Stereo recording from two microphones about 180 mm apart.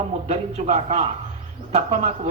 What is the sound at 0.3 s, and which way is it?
Speech, 40° right (ahead or behind).